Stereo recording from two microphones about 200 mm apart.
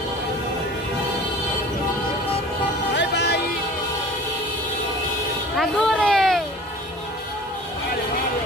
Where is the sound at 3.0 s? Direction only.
55° left (ahead or behind).